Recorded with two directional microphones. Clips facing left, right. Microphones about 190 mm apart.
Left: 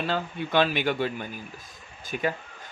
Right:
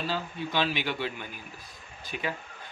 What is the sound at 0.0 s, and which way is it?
Speech, 60° left (ahead or behind).